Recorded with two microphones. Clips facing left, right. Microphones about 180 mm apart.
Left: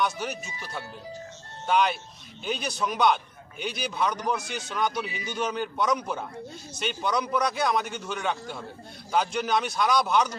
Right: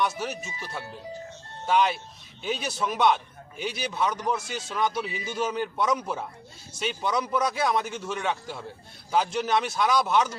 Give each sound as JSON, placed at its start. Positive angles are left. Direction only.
{"t": 0.0, "sound": "a man's voice", "side_deg": -5}
{"t": 0.4, "sound": "speech", "side_deg": -25}
{"t": 1.6, "sound": "a man's voice", "side_deg": 0}